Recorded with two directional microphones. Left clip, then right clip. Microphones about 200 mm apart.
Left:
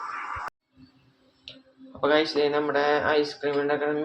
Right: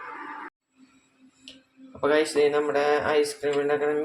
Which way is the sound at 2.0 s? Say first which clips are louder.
Right 1 dB; 15° right (ahead or behind).